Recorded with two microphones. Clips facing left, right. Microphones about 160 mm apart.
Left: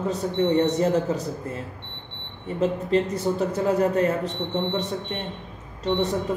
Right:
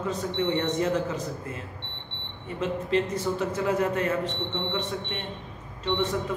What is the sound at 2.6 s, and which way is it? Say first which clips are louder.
Speech: left 4 dB; 35° left (ahead or behind).